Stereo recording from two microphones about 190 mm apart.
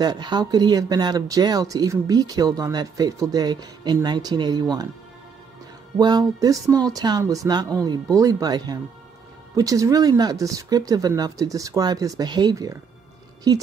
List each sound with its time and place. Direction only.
0.0 s speech: 20° right (ahead or behind)
5.9 s speech: 20° right (ahead or behind)